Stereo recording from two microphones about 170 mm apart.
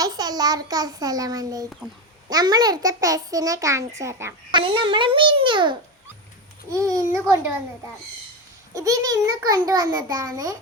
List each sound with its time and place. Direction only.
0.0 s a child's voice: 20° right (ahead or behind)
4.5 s a child's voice: 30° right (ahead or behind)
8.7 s a child's voice: 20° right (ahead or behind)